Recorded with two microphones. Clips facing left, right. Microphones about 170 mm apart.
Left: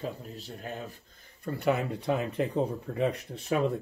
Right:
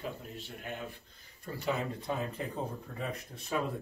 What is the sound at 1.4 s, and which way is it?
Speech, 60° left (ahead or behind).